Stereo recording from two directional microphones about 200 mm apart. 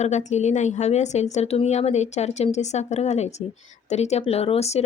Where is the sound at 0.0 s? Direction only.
35° left (ahead or behind).